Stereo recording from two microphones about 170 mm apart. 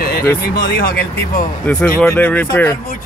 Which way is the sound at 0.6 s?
60° left (ahead or behind).